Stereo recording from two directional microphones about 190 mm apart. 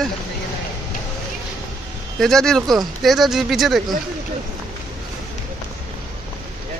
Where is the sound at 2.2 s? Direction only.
Centre (ahead or behind).